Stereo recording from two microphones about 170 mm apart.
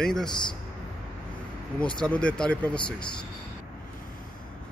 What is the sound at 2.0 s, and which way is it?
Speech, 5° left (ahead or behind).